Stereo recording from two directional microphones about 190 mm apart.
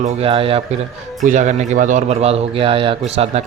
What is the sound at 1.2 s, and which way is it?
A man's voice, 40° right (ahead or behind).